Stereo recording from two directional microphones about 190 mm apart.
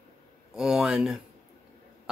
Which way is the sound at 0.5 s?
5° right (ahead or behind).